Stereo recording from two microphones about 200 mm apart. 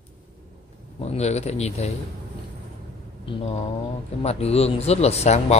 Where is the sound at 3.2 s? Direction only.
30° left (ahead or behind).